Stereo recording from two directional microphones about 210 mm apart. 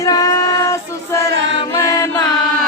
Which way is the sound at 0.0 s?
15° left (ahead or behind).